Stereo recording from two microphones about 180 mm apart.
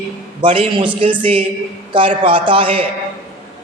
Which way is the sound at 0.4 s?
30° right (ahead or behind).